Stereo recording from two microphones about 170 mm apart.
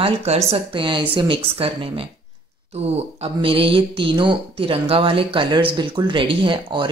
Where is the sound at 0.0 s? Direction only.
40° right (ahead or behind).